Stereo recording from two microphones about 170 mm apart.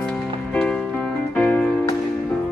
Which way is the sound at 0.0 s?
5° left (ahead or behind).